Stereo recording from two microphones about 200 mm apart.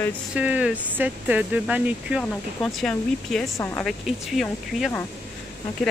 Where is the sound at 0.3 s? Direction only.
5° right (ahead or behind); by 3.8 s 10° left (ahead or behind).